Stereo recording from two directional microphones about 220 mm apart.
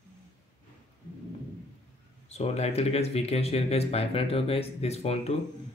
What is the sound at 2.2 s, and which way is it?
Speech, 30° left (ahead or behind).